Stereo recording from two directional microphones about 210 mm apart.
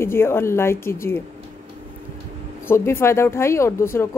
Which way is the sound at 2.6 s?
10° left (ahead or behind).